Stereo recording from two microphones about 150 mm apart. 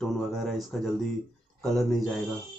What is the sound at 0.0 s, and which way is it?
Speech, centre (ahead or behind).